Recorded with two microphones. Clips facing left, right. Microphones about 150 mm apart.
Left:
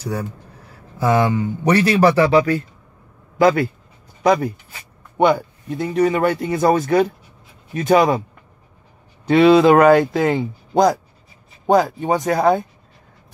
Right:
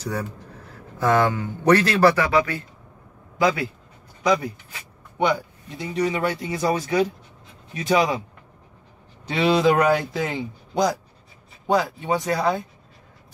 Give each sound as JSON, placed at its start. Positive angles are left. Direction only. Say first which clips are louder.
{"t": 0.0, "sound": "speech", "louder": "left 3 dB", "side_deg": 10}
{"t": 2.1, "sound": "speech", "louder": "left 7 dB", "side_deg": 30}
{"t": 3.3, "sound": "speech", "louder": "left 6 dB", "side_deg": 55}
{"t": 9.2, "sound": "speech", "louder": "left 8 dB", "side_deg": 55}